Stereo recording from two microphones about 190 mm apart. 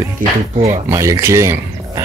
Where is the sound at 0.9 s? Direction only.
15° right (ahead or behind).